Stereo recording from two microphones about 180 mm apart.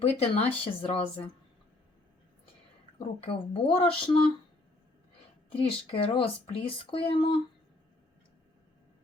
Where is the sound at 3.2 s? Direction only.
30° left (ahead or behind).